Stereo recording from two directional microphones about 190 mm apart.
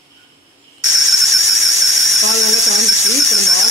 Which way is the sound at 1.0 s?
Centre (ahead or behind).